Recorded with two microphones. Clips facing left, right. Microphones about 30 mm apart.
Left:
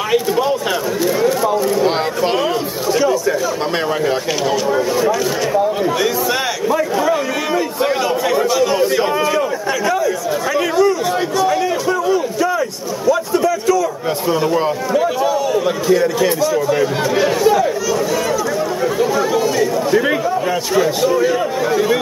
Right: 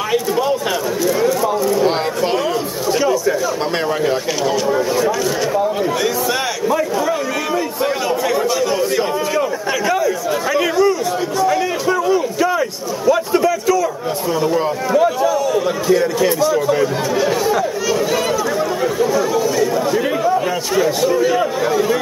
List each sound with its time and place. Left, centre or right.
0.1 s a sound: centre
2.9 s chatter: centre
4.1 s speech: centre
7.0 s chatter: centre
9.7 s a sound: centre
10.5 s speech: centre
11.5 s a sound: centre
15.9 s speech: centre
17.1 s speech: left
18.9 s chatter: centre
20.7 s speech: centre